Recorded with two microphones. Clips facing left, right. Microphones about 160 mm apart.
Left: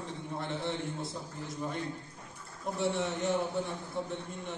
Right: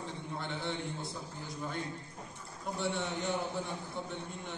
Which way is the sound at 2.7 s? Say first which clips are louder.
Left 4 dB; centre (ahead or behind).